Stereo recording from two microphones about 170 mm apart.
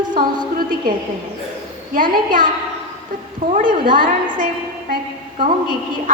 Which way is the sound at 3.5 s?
55° right (ahead or behind).